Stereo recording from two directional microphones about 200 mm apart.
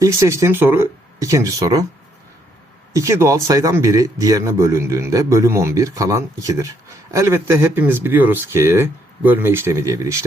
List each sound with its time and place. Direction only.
0.0 s speech: 15° right (ahead or behind)
2.9 s speech: 15° right (ahead or behind)